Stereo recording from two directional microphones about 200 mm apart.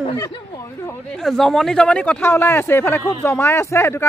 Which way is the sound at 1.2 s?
Centre (ahead or behind).